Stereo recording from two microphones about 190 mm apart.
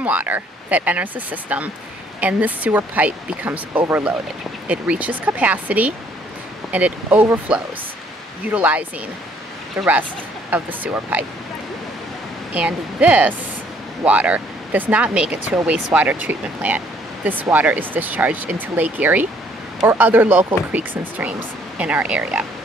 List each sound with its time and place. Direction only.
0.0 s speech: 10° right (ahead or behind)
12.5 s speech: 10° right (ahead or behind)